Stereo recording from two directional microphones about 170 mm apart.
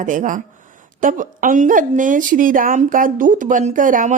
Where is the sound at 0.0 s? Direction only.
50° right (ahead or behind).